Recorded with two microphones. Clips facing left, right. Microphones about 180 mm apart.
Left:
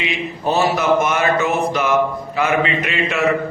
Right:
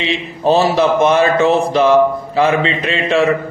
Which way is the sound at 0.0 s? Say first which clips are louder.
Right 5 dB; 30° right (ahead or behind).